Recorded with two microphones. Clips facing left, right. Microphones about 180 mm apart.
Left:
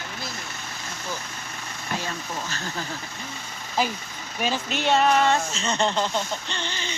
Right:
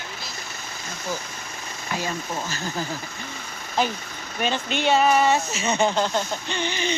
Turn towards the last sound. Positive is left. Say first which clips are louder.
# right 6 dB
turn(degrees=-15)  # may be behind; listen again after turning